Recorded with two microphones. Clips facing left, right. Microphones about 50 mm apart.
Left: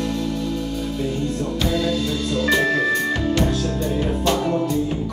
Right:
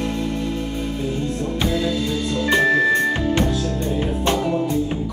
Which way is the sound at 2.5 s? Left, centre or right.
Right.